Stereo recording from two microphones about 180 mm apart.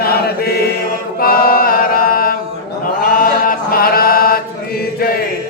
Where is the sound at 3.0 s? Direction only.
50° left (ahead or behind).